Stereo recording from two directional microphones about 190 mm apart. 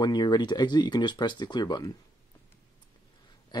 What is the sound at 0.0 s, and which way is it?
Speech, 20° left (ahead or behind).